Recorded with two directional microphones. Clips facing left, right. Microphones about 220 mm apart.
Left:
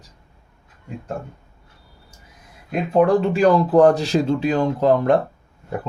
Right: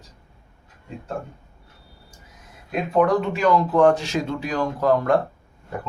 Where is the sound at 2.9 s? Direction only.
30° left (ahead or behind).